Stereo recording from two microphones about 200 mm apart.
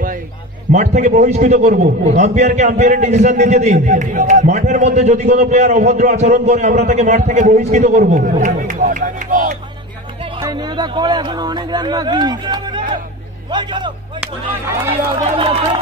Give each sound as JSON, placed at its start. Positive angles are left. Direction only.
{"t": 0.7, "sound": "a man's voice", "side_deg": -35}
{"t": 10.4, "sound": "speech", "side_deg": -20}
{"t": 15.3, "sound": "speech", "side_deg": -25}